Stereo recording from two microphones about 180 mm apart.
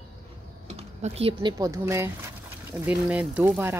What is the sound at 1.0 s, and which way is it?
Speech, 35° right (ahead or behind).